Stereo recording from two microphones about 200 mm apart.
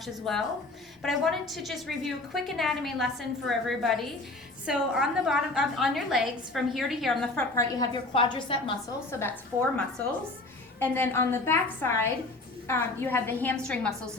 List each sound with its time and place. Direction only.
0.0 s a woman's voice: centre (ahead or behind)
7.5 s a woman's voice: 20° left (ahead or behind)
9.1 s a woman's voice: 10° left (ahead or behind)